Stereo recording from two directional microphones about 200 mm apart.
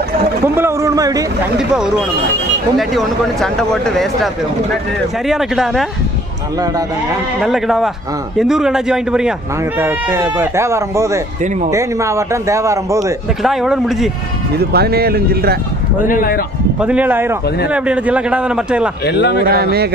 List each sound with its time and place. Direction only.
0.6 s speech: 15° right (ahead or behind)
2.8 s speech: centre (ahead or behind)
5.3 s speech: centre (ahead or behind)
7.3 s speech: centre (ahead or behind)
13.4 s speech: centre (ahead or behind)
14.6 s speech: 50° right (ahead or behind)
16.1 s speech: 45° left (ahead or behind)
16.8 s speech: 5° right (ahead or behind)
19.0 s speech: 55° left (ahead or behind)
19.4 s speech: 50° right (ahead or behind)